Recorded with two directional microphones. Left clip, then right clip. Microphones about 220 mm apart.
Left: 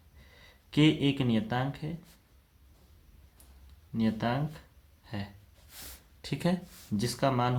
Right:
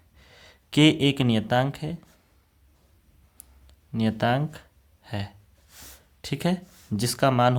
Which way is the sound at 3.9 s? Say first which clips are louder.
Right 7 dB; 50° right (ahead or behind).